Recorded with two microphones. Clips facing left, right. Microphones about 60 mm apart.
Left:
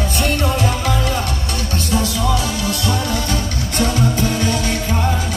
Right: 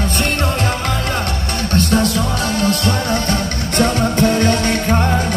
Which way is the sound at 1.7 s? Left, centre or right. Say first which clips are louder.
Right 6 dB; right.